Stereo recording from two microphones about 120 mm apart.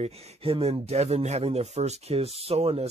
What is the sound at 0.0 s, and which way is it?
Speech, 55° right (ahead or behind).